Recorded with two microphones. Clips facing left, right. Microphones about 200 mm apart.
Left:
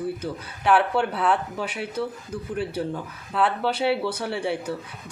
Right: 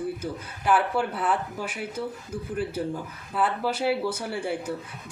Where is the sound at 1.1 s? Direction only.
70° left (ahead or behind).